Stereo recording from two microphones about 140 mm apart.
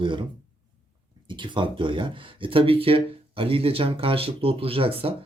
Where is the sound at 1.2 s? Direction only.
35° right (ahead or behind).